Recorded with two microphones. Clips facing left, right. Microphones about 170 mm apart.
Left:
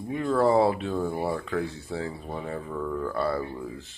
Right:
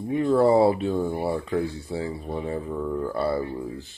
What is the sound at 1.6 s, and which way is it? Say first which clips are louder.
Speech: right 3 dB; centre (ahead or behind).